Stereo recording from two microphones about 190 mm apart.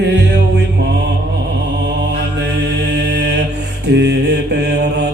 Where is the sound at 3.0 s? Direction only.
65° right (ahead or behind).